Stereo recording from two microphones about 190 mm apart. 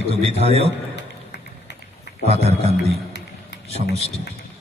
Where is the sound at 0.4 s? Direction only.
35° right (ahead or behind).